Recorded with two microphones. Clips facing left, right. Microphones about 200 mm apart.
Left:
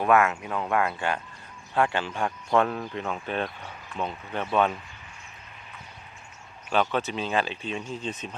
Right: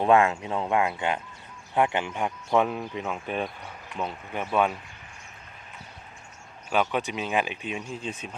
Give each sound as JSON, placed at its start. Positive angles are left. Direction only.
{"t": 0.0, "sound": "speech", "side_deg": -30}
{"t": 2.5, "sound": "speech", "side_deg": -5}
{"t": 6.7, "sound": "speech", "side_deg": -10}